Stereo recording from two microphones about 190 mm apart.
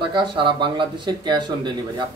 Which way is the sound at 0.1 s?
25° right (ahead or behind).